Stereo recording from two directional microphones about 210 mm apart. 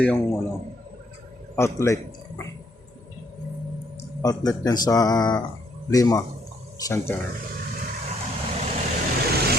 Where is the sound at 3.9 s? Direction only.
15° left (ahead or behind).